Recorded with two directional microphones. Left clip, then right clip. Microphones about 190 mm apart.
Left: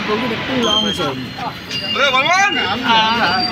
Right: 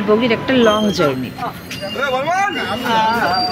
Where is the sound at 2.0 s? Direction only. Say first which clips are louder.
Left 4 dB; 30° right (ahead or behind).